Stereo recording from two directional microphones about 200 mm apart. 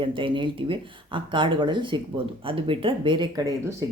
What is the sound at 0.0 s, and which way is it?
Speech, 25° right (ahead or behind).